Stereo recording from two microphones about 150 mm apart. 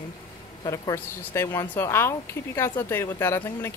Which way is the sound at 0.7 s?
20° left (ahead or behind).